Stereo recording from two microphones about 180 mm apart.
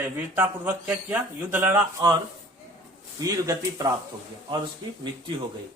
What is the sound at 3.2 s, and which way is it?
Speech, 20° right (ahead or behind).